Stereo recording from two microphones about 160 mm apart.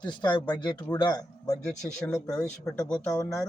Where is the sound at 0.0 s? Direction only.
30° left (ahead or behind).